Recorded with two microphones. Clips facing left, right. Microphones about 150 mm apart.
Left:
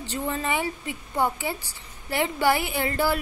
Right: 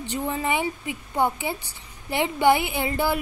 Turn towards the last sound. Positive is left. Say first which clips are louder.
# even
turn(degrees=-15)  # may be behind; listen again after turning